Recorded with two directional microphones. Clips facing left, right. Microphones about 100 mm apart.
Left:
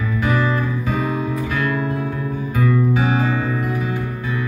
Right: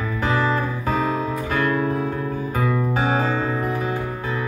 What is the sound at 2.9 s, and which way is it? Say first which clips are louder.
Music: left 2 dB; 45° right (ahead or behind).